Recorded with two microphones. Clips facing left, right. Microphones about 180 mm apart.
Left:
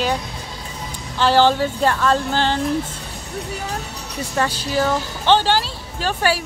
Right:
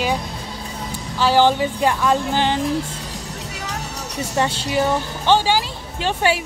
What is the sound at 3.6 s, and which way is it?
Music, 75° right (ahead or behind).